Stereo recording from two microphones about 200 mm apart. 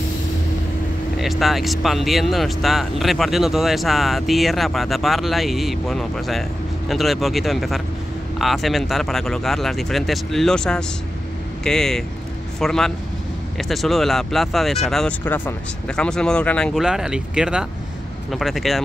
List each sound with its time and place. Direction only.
1.1 s speech: centre (ahead or behind)